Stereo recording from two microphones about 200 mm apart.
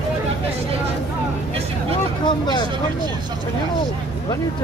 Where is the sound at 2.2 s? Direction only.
25° left (ahead or behind).